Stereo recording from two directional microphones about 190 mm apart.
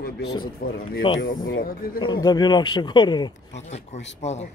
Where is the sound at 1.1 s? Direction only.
25° left (ahead or behind).